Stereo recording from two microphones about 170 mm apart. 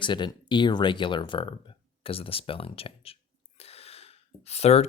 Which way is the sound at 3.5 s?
35° left (ahead or behind).